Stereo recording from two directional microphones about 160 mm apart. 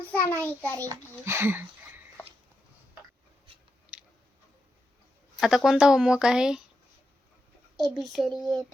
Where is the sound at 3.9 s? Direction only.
10° right (ahead or behind).